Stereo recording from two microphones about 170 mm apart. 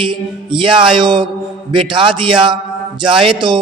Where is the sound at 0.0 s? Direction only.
30° right (ahead or behind).